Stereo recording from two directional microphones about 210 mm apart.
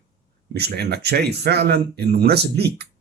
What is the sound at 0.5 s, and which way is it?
Speech, 50° right (ahead or behind).